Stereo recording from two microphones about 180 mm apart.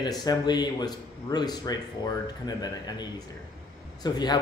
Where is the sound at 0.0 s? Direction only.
20° left (ahead or behind).